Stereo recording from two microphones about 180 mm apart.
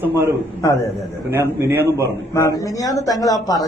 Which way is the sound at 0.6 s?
15° left (ahead or behind).